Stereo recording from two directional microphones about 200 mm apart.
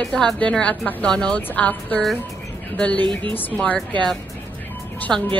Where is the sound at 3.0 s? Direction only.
25° right (ahead or behind).